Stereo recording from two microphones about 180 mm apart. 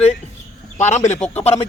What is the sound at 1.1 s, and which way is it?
Speech, 35° left (ahead or behind).